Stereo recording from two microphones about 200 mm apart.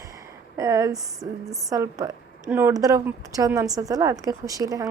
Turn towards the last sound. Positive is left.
turn(degrees=-15)  # may be behind; listen again after turning